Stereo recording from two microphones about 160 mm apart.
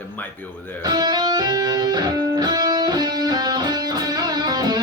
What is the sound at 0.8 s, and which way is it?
Music, 25° right (ahead or behind).